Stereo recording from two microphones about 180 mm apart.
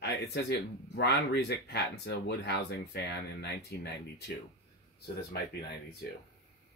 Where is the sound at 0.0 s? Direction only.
65° left (ahead or behind).